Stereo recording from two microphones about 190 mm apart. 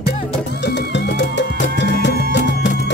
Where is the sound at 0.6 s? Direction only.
65° left (ahead or behind).